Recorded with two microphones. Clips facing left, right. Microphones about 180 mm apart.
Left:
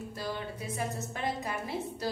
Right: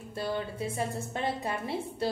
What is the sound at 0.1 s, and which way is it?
A woman's voice, 25° right (ahead or behind).